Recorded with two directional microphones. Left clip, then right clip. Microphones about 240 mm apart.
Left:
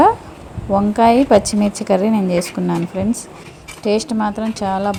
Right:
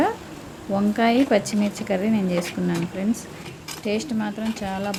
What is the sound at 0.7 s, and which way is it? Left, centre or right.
Speech, centre.